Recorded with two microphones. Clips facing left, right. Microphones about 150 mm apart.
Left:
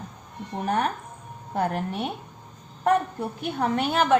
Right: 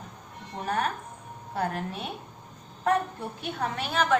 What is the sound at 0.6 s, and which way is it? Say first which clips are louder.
Speech: left 3 dB; 35° left (ahead or behind).